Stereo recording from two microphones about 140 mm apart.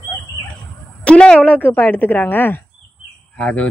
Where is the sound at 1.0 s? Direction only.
5° left (ahead or behind).